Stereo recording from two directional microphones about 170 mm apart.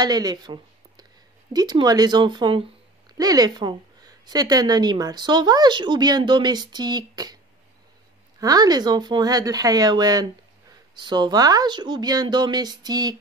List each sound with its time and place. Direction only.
0.0 s a woman's voice: 25° right (ahead or behind)
8.4 s a woman's voice: 20° right (ahead or behind)